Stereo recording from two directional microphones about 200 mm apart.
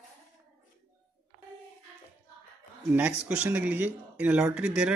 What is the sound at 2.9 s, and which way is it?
Speech, 5° right (ahead or behind).